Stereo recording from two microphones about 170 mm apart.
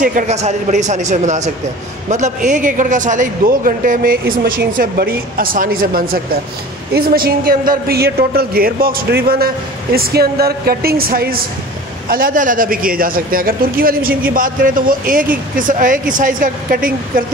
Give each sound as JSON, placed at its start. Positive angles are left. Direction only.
{"t": 0.0, "sound": "a man's voice", "side_deg": -45}